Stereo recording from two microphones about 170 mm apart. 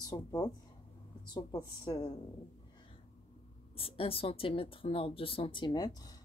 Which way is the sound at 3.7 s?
35° left (ahead or behind).